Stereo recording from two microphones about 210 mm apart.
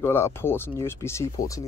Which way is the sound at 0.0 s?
10° left (ahead or behind).